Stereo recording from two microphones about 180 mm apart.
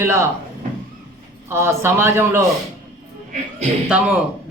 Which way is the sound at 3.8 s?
5° right (ahead or behind).